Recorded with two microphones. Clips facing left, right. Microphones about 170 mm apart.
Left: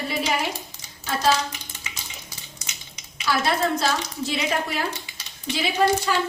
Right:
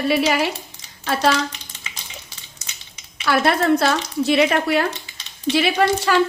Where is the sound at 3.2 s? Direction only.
60° right (ahead or behind).